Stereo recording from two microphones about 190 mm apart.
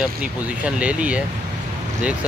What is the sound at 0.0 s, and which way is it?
Speech, 5° right (ahead or behind).